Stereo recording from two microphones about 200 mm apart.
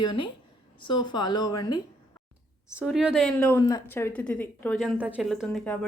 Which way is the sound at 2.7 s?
5° right (ahead or behind).